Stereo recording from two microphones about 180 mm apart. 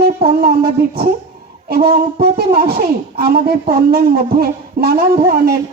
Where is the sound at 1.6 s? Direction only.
60° right (ahead or behind).